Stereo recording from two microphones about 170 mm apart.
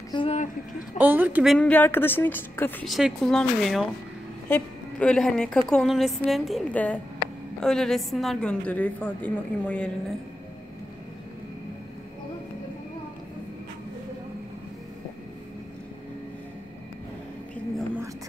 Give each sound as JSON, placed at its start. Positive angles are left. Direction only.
{"t": 0.1, "sound": "speech", "side_deg": 30}
{"t": 0.9, "sound": "a woman's voice", "side_deg": -10}
{"t": 1.5, "sound": "speech", "side_deg": 10}
{"t": 2.8, "sound": "a woman's voice", "side_deg": 0}